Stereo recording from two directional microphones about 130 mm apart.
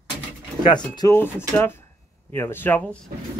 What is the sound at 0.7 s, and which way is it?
Speech, 35° left (ahead or behind).